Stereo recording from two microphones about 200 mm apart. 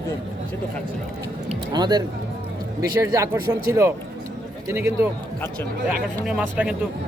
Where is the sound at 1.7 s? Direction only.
20° right (ahead or behind).